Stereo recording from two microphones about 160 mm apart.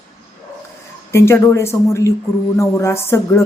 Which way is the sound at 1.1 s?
15° left (ahead or behind).